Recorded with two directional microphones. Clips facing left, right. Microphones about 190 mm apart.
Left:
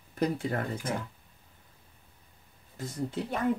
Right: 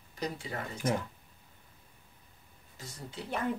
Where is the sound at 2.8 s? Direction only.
55° left (ahead or behind).